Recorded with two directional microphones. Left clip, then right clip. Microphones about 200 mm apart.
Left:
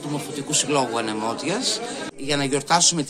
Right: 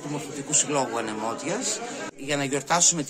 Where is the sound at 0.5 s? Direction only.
15° right (ahead or behind).